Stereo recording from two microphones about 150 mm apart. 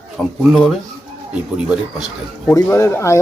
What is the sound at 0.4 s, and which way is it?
Speech, centre (ahead or behind).